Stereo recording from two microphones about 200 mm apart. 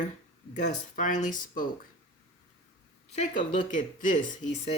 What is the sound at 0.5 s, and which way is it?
Speech, 40° left (ahead or behind).